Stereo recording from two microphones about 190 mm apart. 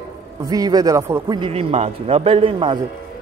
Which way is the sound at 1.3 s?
30° right (ahead or behind).